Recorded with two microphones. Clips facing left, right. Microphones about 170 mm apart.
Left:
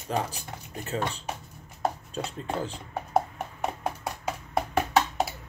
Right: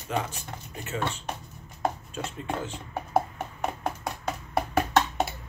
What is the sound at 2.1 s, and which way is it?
Speech, 35° left (ahead or behind).